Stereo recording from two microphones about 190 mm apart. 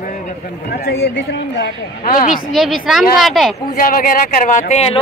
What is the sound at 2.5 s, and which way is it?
Speech, centre (ahead or behind).